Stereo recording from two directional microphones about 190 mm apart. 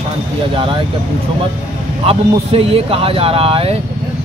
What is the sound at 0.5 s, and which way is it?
Speech, 25° right (ahead or behind).